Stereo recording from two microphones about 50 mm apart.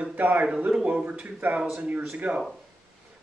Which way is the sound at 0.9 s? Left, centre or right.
Right.